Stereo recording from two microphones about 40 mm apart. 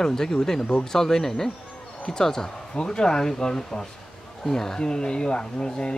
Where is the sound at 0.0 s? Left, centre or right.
Centre.